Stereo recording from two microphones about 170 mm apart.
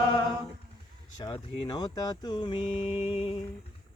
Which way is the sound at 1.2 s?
25° left (ahead or behind).